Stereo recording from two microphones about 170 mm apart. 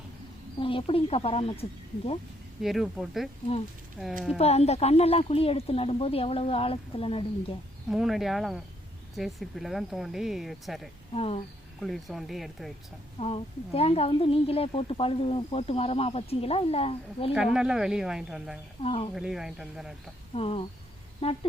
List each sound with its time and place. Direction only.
0.6 s a woman's voice: 30° left (ahead or behind)
2.6 s speech: centre (ahead or behind)
4.4 s a woman's voice: 40° left (ahead or behind)
7.9 s speech: centre (ahead or behind)
11.1 s a woman's voice: 35° left (ahead or behind)
11.8 s speech: centre (ahead or behind)
13.1 s a woman's voice: 35° left (ahead or behind)
17.3 s speech: 5° right (ahead or behind)
18.8 s a woman's voice: 35° left (ahead or behind)
19.1 s speech: centre (ahead or behind)
20.3 s a woman's voice: 35° left (ahead or behind)